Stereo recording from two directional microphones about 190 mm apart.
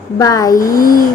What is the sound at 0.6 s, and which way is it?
Speech, 45° left (ahead or behind).